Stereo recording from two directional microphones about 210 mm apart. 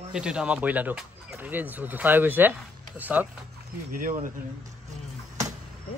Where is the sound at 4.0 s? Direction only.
40° right (ahead or behind).